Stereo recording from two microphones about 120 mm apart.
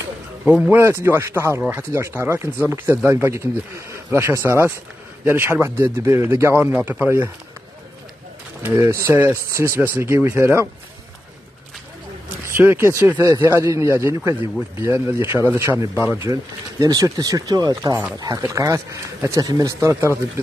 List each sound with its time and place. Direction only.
0.5 s speech: 15° right (ahead or behind)
8.6 s speech: 25° right (ahead or behind)
12.4 s speech: 20° right (ahead or behind)